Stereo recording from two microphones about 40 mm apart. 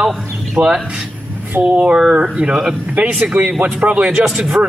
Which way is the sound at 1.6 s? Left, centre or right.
Right.